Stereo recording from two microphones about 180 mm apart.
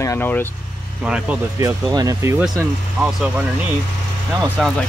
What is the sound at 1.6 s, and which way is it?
Speech, 20° right (ahead or behind).